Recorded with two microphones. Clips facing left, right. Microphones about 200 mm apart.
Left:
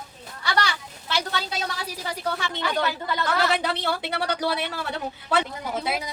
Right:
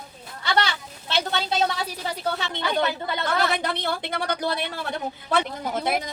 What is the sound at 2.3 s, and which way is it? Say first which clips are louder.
Speech: right 1 dB; 25° right (ahead or behind).